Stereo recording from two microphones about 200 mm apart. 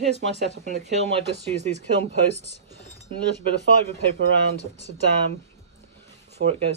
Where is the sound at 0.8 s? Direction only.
35° right (ahead or behind).